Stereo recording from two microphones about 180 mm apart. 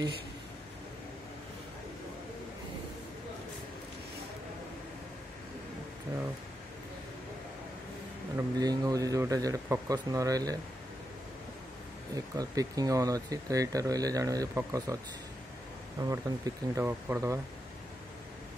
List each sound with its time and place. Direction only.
8.4 s speech: 20° right (ahead or behind)
12.4 s speech: 20° right (ahead or behind)
16.0 s speech: 20° right (ahead or behind)